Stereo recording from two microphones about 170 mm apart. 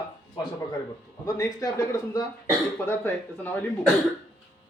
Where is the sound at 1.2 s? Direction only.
20° left (ahead or behind).